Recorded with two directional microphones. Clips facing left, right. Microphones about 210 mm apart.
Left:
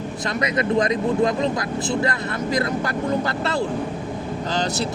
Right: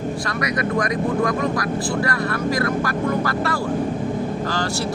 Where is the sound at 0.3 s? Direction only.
20° left (ahead or behind).